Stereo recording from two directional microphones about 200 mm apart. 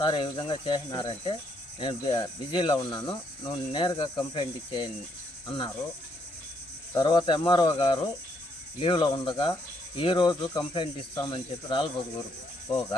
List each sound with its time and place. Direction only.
0.0 s speech: 25° left (ahead or behind)
6.9 s speech: 20° left (ahead or behind)